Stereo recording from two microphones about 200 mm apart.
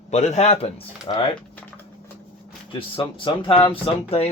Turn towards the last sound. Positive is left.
turn(degrees=30)  # may be behind; listen again after turning